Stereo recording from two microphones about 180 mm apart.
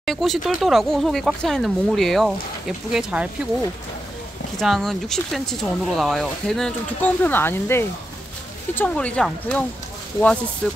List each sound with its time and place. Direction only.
0.0 s speech: centre (ahead or behind)
4.6 s speech: centre (ahead or behind)